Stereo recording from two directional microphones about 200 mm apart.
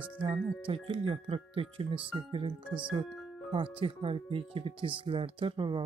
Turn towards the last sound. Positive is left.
turn(degrees=-25)  # may be behind; listen again after turning